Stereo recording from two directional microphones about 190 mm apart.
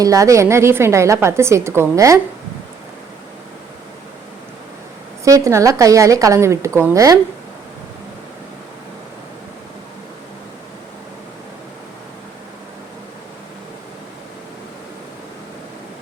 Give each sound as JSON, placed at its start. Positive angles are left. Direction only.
{"t": 0.0, "sound": "a woman's voice", "side_deg": -15}
{"t": 5.2, "sound": "a woman's voice", "side_deg": -15}